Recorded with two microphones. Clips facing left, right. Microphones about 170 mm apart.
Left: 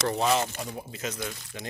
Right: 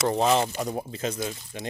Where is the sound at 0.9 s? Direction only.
30° right (ahead or behind).